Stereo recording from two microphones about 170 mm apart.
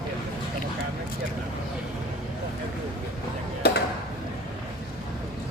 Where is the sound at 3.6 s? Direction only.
75° left (ahead or behind).